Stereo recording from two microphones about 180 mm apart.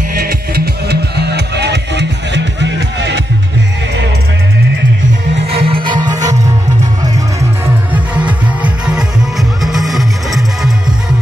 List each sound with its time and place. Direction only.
0.1 s music: 55° right (ahead or behind); by 3.2 s 75° right (ahead or behind)
5.5 s music: 30° right (ahead or behind)
7.9 s music: 5° right (ahead or behind)